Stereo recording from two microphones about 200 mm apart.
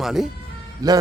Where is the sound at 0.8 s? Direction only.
20° right (ahead or behind).